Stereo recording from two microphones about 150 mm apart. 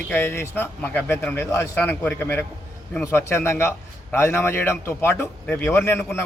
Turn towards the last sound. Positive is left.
turn(degrees=15)  # may be behind; listen again after turning